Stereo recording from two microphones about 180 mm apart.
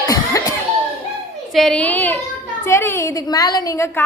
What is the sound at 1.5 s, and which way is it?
A woman's voice, centre (ahead or behind).